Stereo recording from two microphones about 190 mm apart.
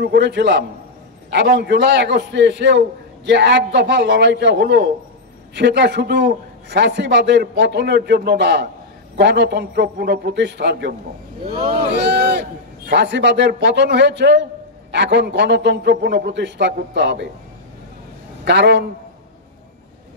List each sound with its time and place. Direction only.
0.0 s a man's voice: 65° right (ahead or behind)
18.4 s a man's voice: 65° right (ahead or behind)